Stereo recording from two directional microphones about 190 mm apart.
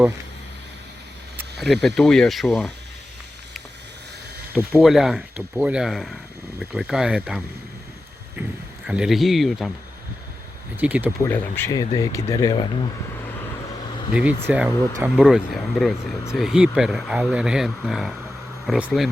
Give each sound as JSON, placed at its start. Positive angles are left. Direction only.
{"t": 1.5, "sound": "speech", "side_deg": 0}
{"t": 4.5, "sound": "speech", "side_deg": -5}
{"t": 10.8, "sound": "speech", "side_deg": -10}
{"t": 11.2, "sound": "speech", "side_deg": 10}
{"t": 14.1, "sound": "speech", "side_deg": -5}